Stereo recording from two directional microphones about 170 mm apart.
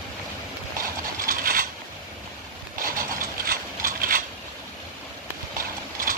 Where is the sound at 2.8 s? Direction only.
55° right (ahead or behind).